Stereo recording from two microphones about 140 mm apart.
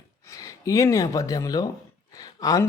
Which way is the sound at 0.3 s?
25° left (ahead or behind).